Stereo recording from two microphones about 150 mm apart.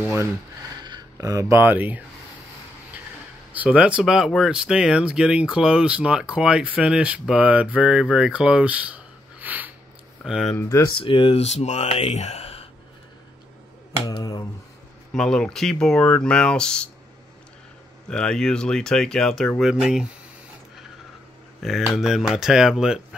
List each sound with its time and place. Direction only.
0.0 s speech: 15° right (ahead or behind)
0.8 s speech: 25° right (ahead or behind)
3.5 s speech: 10° right (ahead or behind)
10.5 s speech: 20° left (ahead or behind)
11.0 s speech: 35° left (ahead or behind)
14.0 s speech: 25° left (ahead or behind)
15.1 s speech: 5° left (ahead or behind)
18.1 s speech: 5° left (ahead or behind)
21.5 s speech: centre (ahead or behind)